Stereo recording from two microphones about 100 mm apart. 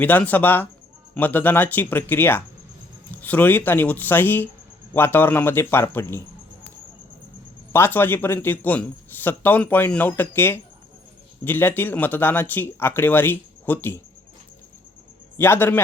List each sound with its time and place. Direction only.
0.0 s speech: 15° left (ahead or behind)
7.7 s speech: 20° left (ahead or behind)
15.4 s speech: 20° left (ahead or behind)